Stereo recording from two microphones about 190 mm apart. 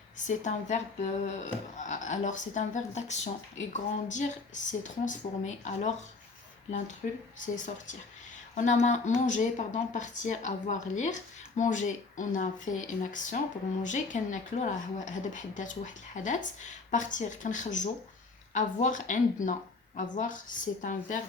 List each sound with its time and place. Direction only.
0.3 s a woman's voice: 40° left (ahead or behind)